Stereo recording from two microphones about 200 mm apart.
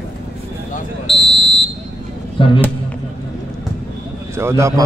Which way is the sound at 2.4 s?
25° left (ahead or behind).